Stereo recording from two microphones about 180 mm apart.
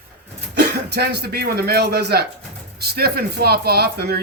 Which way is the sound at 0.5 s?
65° right (ahead or behind).